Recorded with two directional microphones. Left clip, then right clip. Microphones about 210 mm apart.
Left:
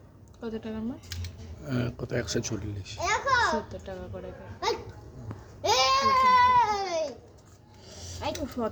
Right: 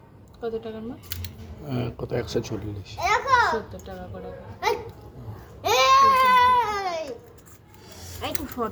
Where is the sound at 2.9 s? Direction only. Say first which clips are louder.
Right 5 dB; 35° left (ahead or behind).